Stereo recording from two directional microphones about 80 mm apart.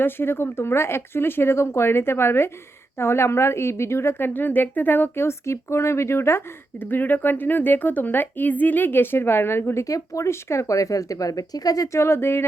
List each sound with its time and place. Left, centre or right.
0.0 s a woman's voice: left
9.8 s speech: left